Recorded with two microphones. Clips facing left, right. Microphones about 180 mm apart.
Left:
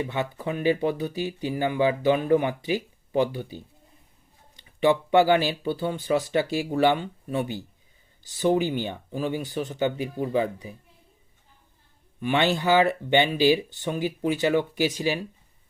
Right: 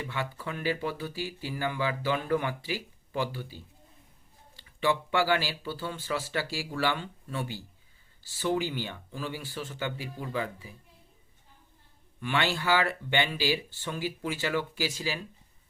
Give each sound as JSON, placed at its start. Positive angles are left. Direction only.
{"t": 0.0, "sound": "speech", "side_deg": 20}
{"t": 12.2, "sound": "speech", "side_deg": 20}